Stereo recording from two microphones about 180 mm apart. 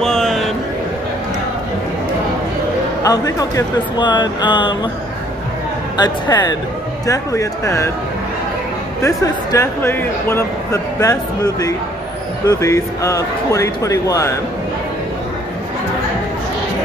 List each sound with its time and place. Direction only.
0.0 s a sound: 5° left (ahead or behind)
3.0 s speech: 20° left (ahead or behind)
6.3 s speech: 20° left (ahead or behind)
9.0 s speech: 15° left (ahead or behind)